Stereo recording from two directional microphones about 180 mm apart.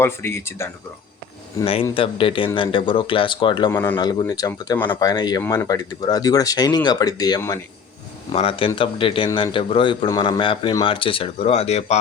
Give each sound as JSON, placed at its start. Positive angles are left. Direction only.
{"t": 0.0, "sound": "speech", "side_deg": 15}
{"t": 2.0, "sound": "a man's voice", "side_deg": 30}
{"t": 3.7, "sound": "a man's voice", "side_deg": 15}
{"t": 8.3, "sound": "a man's voice", "side_deg": 30}